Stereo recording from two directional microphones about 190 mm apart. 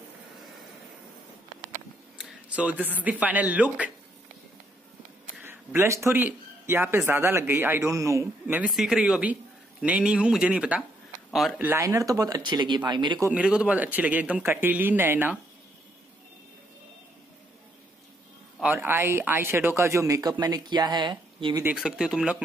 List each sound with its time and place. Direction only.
2.1 s a sound: 5° right (ahead or behind)
3.0 s speech: 10° right (ahead or behind)
5.2 s a sound: 10° right (ahead or behind)
7.1 s speech: 10° right (ahead or behind)
8.7 s a man's voice: 5° right (ahead or behind); by 13.3 s 25° right (ahead or behind)
13.3 s speech: 5° right (ahead or behind)
18.6 s speech: 10° right (ahead or behind); by 21.6 s 25° right (ahead or behind)
21.6 s a man's voice: 5° right (ahead or behind)